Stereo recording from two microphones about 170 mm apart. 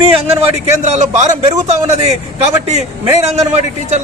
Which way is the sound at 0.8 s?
45° right (ahead or behind).